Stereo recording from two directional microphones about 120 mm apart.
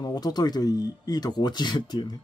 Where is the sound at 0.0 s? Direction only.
35° left (ahead or behind).